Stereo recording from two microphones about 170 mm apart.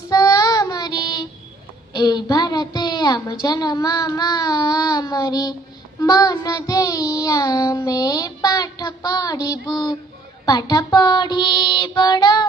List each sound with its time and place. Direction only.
0.1 s child singing: 20° left (ahead or behind)
1.9 s a woman's voice: 25° left (ahead or behind)
6.0 s child singing: 20° left (ahead or behind)
10.4 s a woman's voice: 20° left (ahead or behind)